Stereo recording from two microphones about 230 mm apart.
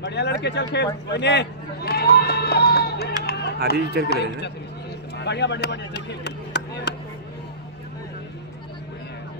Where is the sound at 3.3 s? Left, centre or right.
Left.